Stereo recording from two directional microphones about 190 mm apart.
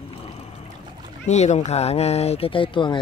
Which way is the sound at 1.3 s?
35° left (ahead or behind).